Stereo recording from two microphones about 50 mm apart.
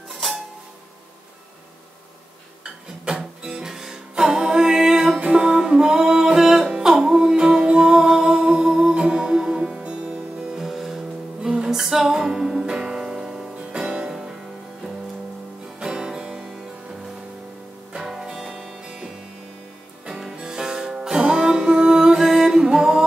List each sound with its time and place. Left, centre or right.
0.1 s a sound: centre
2.6 s music: centre
13.7 s music: right
14.0 s music: centre
15.8 s music: centre
17.9 s music: centre